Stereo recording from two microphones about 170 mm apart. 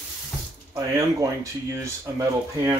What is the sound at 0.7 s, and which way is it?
Speech, 20° right (ahead or behind).